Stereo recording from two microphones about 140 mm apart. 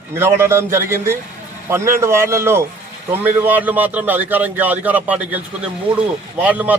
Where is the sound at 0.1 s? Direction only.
20° right (ahead or behind).